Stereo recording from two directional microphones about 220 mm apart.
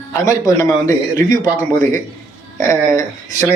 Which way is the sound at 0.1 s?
15° left (ahead or behind).